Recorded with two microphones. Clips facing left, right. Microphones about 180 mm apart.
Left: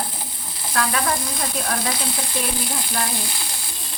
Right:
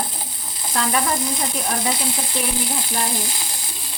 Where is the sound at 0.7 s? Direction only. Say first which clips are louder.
Even; 20° right (ahead or behind).